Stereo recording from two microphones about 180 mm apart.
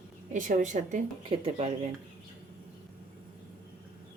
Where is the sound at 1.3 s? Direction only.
35° right (ahead or behind).